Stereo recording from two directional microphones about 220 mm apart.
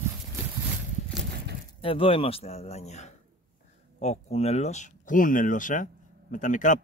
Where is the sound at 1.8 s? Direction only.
25° left (ahead or behind).